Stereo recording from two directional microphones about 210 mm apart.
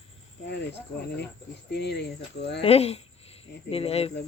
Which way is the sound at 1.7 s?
55° left (ahead or behind).